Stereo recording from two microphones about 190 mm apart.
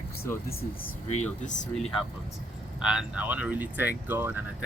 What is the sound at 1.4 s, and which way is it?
Speech, 40° left (ahead or behind).